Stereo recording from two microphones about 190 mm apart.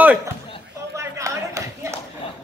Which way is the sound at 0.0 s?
10° right (ahead or behind).